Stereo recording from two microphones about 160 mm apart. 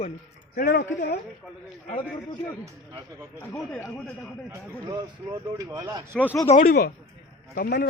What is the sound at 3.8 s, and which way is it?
Speech, 5° left (ahead or behind).